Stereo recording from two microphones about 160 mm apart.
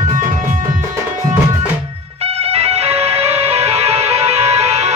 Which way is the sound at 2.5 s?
40° right (ahead or behind).